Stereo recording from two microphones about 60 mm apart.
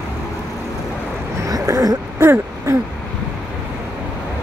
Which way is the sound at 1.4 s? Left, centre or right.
Right.